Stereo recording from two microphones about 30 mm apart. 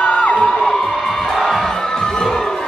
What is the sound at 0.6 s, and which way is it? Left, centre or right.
Crowd, centre.